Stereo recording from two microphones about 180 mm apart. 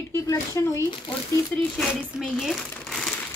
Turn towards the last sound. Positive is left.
turn(degrees=0)  # may be behind; listen again after turning